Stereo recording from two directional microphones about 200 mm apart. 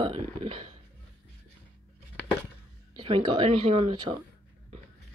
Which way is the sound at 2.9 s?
25° right (ahead or behind).